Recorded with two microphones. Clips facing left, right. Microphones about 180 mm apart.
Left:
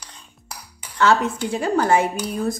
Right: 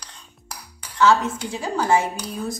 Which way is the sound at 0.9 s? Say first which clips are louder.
Even; 60° left (ahead or behind).